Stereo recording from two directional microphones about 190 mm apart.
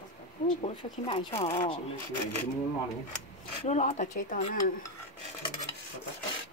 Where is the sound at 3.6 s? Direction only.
40° left (ahead or behind).